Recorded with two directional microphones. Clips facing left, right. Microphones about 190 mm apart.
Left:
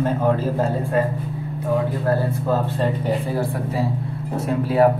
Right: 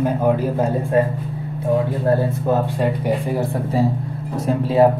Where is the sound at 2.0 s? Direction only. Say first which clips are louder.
Right 3 dB; 15° right (ahead or behind).